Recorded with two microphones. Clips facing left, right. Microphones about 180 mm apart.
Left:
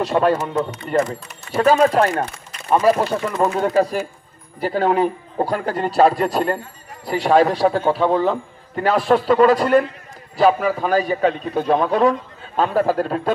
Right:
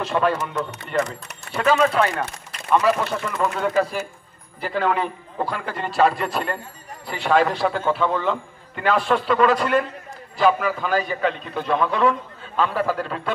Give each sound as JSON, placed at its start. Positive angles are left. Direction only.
{"t": 0.0, "sound": "a man's voice", "side_deg": 40}